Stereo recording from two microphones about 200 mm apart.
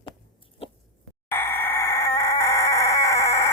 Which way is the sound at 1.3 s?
10° left (ahead or behind).